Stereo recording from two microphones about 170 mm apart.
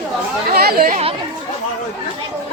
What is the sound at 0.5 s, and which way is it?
Speech, 65° right (ahead or behind).